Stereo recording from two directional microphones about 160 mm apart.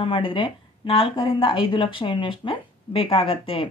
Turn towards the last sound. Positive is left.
turn(degrees=35)  # may be behind; listen again after turning